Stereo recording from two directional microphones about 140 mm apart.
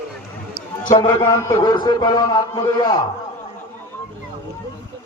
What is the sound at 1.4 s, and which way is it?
A man's voice, 30° left (ahead or behind).